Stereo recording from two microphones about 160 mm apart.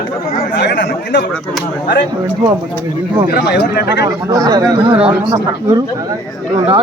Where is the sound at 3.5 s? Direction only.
90° left.